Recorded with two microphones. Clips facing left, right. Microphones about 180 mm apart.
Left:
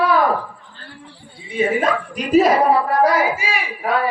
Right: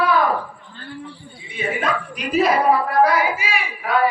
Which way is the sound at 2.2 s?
45° left (ahead or behind).